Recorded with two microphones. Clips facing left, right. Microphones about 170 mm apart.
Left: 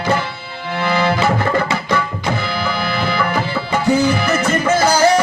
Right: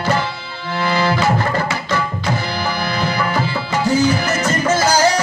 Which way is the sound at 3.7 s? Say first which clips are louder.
Left 1 dB; 60° left (ahead or behind).